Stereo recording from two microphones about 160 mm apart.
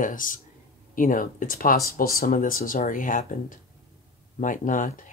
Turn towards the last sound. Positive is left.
turn(degrees=55)  # may be behind; listen again after turning